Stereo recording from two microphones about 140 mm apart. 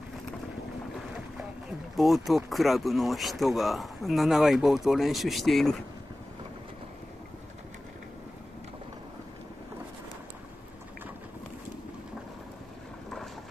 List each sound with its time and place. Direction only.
2.0 s speech: centre (ahead or behind)